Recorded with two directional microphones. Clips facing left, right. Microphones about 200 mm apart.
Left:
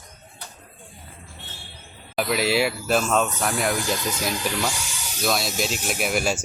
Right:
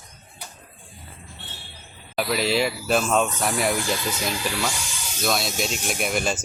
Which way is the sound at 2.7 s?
5° right (ahead or behind).